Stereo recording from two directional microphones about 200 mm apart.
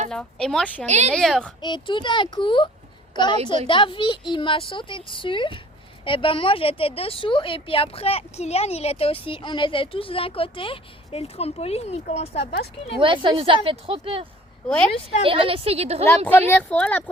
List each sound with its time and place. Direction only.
0.1 s speech: 5° left (ahead or behind)
0.9 s speech: 35° right (ahead or behind)
1.1 s speech: centre (ahead or behind)
1.6 s speech: 25° left (ahead or behind)
3.7 s speech: 25° left (ahead or behind)
13.0 s a woman's voice: 25° right (ahead or behind)
14.7 s speech: 5° left (ahead or behind)
15.2 s a woman's voice: 25° right (ahead or behind)
16.0 s speech: 10° left (ahead or behind)